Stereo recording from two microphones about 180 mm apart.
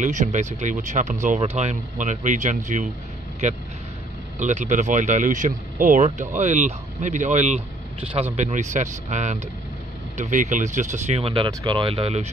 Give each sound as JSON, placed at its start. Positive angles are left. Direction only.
{"t": 0.0, "sound": "speech", "side_deg": -45}